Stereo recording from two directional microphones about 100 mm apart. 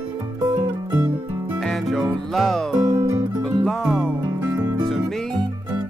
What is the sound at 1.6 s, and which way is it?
Music, centre (ahead or behind).